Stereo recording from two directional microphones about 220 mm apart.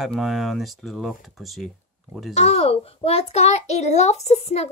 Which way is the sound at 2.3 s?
30° left (ahead or behind).